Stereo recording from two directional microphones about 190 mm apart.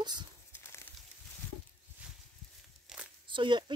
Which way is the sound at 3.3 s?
25° right (ahead or behind).